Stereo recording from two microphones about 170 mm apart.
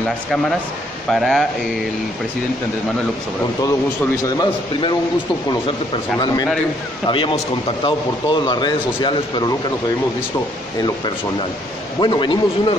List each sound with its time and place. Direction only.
1.1 s speech: centre (ahead or behind)
6.1 s speech: 25° left (ahead or behind)
12.0 s speech: 25° left (ahead or behind)